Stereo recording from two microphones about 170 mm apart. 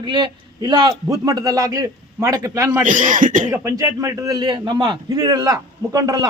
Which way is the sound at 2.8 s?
50° right (ahead or behind).